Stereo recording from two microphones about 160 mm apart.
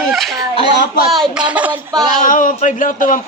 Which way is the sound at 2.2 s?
55° left (ahead or behind).